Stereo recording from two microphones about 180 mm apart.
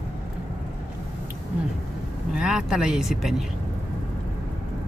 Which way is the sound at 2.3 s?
5° right (ahead or behind).